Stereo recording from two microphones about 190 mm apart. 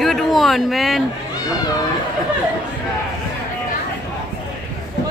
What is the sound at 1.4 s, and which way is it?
Speech, 20° left (ahead or behind).